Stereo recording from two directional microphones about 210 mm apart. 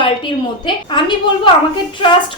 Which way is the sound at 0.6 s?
20° left (ahead or behind).